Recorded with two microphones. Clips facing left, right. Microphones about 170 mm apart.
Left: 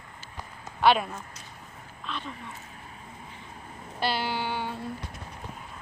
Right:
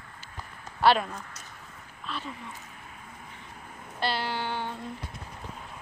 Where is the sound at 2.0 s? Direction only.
5° right (ahead or behind).